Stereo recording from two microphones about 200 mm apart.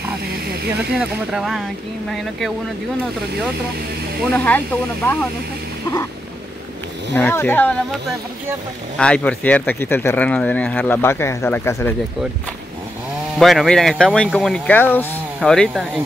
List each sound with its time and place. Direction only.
0.9 s speech: centre (ahead or behind)
4.2 s speech: 5° left (ahead or behind)
7.2 s speech: 10° left (ahead or behind)
13.4 s speech: centre (ahead or behind)